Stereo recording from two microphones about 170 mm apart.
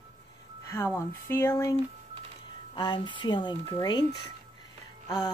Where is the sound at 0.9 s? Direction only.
15° left (ahead or behind).